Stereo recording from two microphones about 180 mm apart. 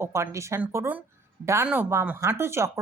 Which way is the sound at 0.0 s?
15° right (ahead or behind).